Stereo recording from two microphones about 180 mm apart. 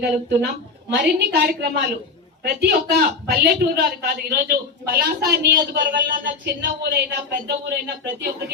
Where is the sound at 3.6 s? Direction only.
55° right (ahead or behind).